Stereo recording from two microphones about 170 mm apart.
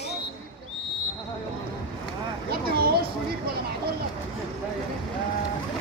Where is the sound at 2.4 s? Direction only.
65° right (ahead or behind).